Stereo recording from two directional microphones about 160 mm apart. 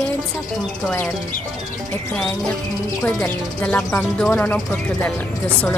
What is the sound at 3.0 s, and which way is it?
Speech, 5° left (ahead or behind).